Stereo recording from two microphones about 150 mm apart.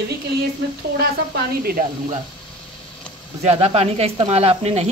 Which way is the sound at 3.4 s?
45° right (ahead or behind).